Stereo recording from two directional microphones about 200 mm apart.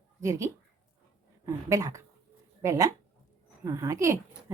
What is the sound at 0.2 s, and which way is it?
Speech, 15° right (ahead or behind).